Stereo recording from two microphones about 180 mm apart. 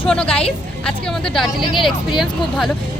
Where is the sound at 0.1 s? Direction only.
5° left (ahead or behind).